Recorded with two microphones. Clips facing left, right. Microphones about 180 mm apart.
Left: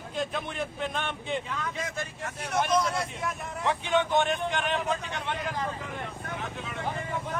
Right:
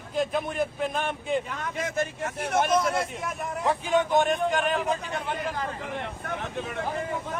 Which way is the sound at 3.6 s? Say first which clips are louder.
Right 2 dB; 40° right (ahead or behind).